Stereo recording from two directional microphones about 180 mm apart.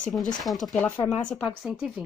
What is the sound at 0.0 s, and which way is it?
Speech, centre (ahead or behind).